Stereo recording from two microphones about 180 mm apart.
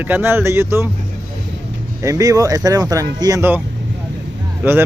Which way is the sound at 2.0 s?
20° right (ahead or behind).